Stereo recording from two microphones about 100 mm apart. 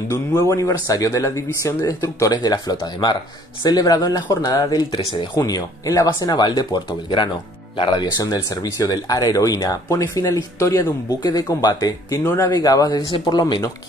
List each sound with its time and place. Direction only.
0.1 s speech: 30° left (ahead or behind); by 7.2 s 45° left (ahead or behind)
7.7 s speech: 60° left (ahead or behind)
8.0 s speech: 40° left (ahead or behind)